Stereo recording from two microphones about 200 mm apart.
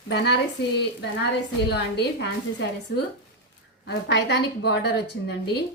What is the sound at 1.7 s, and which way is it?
A woman's voice, 60° left (ahead or behind).